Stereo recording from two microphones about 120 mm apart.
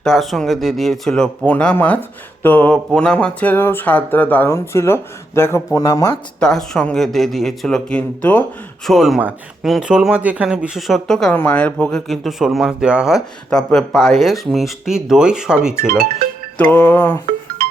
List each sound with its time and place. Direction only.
0.0 s speech: centre (ahead or behind); by 6.1 s 25° left (ahead or behind)
6.4 s speech: 5° left (ahead or behind)
8.9 s speech: centre (ahead or behind)
16.6 s speech: 15° left (ahead or behind)